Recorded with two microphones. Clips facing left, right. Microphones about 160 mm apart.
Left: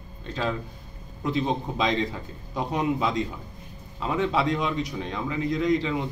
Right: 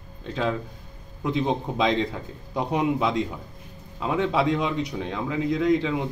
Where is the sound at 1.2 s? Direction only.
15° right (ahead or behind).